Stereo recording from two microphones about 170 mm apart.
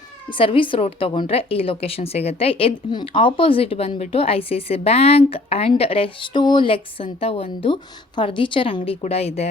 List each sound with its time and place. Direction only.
0.3 s a woman's voice: 30° left (ahead or behind)